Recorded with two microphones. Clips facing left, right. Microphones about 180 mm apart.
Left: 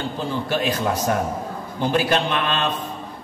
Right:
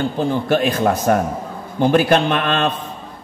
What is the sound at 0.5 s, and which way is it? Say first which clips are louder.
A man's voice: right 5 dB; 55° right (ahead or behind).